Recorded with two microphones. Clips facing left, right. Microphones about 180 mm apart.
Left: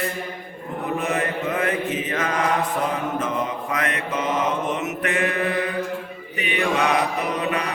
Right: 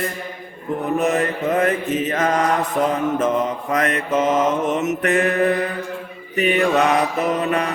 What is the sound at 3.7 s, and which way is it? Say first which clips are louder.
Mantra: right 9 dB; 45° right (ahead or behind).